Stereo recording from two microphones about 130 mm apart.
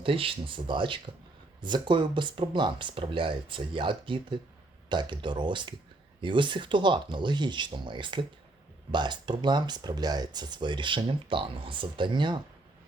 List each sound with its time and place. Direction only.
0.0 s speech: 45° right (ahead or behind)